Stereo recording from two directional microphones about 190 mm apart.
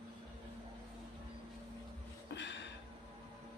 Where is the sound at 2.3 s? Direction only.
65° left (ahead or behind).